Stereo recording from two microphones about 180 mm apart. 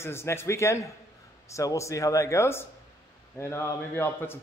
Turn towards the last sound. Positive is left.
turn(degrees=15)  # may be behind; listen again after turning